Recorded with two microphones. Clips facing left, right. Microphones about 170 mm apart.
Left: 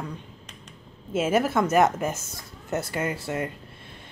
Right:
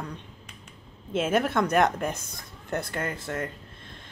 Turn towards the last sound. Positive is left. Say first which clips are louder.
# left 3 dB
turn(degrees=10)  # may be behind; listen again after turning